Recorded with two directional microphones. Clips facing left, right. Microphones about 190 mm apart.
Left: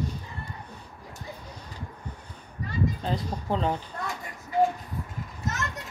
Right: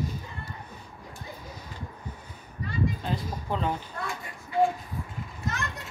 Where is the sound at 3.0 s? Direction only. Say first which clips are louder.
Left 2 dB; 30° left (ahead or behind).